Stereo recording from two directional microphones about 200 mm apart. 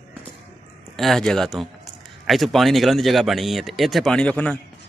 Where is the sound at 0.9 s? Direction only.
Centre (ahead or behind).